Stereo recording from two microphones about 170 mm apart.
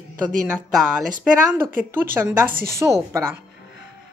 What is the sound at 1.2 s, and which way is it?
A woman's voice, 10° right (ahead or behind).